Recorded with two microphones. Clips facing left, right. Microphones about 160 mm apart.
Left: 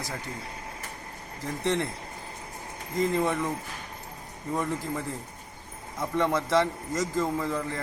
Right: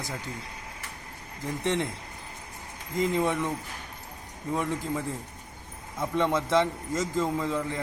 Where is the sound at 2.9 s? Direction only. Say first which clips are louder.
Even; 20° right (ahead or behind).